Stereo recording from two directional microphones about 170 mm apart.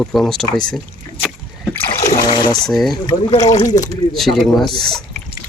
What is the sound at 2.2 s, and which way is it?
Speech, 25° left (ahead or behind).